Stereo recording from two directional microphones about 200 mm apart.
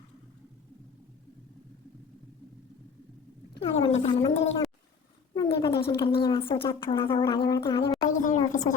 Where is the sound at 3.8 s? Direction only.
35° left (ahead or behind).